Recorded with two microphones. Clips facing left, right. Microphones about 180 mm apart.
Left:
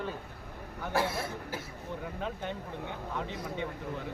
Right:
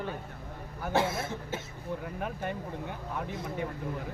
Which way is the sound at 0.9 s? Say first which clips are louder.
Right 2 dB; 25° right (ahead or behind).